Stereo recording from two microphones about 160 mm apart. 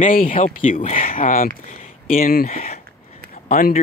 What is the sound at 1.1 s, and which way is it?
Speech, 60° left (ahead or behind).